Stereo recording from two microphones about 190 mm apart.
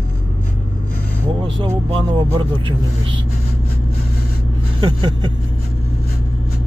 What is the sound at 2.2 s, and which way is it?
Speech, 25° right (ahead or behind).